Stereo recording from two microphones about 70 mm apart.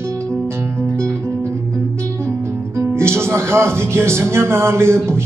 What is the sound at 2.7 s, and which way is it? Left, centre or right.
Speech, right.